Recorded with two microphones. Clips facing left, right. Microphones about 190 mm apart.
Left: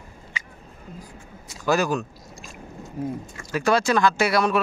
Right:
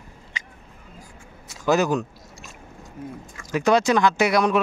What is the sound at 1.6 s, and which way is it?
Speech, 20° right (ahead or behind).